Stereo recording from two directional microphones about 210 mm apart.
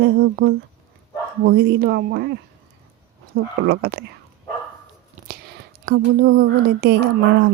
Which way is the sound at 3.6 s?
50° right (ahead or behind).